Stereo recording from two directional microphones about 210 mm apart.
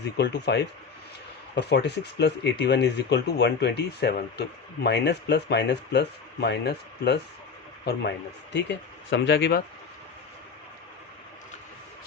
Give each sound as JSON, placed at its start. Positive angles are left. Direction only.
{"t": 0.2, "sound": "speech", "side_deg": 55}